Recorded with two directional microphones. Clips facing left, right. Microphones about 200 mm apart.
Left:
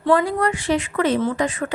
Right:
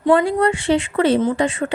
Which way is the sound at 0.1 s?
25° right (ahead or behind).